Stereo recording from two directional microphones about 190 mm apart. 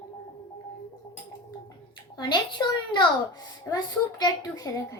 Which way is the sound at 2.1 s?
25° left (ahead or behind).